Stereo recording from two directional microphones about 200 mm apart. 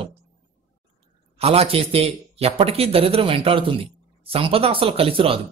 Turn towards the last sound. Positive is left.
turn(degrees=-30)  # may be behind; listen again after turning